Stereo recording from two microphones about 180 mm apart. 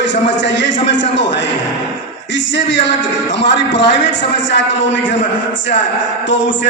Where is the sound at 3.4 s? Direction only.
75° left (ahead or behind).